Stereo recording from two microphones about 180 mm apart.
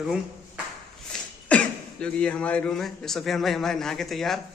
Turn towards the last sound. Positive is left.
turn(degrees=0)  # may be behind; listen again after turning